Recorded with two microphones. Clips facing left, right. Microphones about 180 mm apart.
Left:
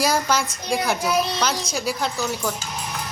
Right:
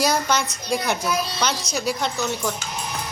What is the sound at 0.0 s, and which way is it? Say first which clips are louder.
Speech: even; 5° left (ahead or behind).